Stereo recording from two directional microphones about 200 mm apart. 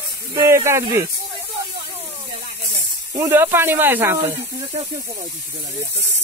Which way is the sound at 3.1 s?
10° right (ahead or behind).